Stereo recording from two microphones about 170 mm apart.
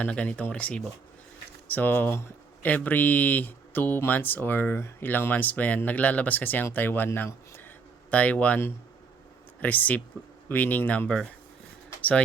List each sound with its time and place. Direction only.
0.0 s speech: 10° left (ahead or behind)